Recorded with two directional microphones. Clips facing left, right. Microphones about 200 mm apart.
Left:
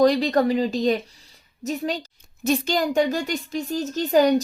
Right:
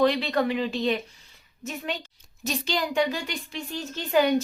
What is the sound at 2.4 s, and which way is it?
Speech, 50° left (ahead or behind).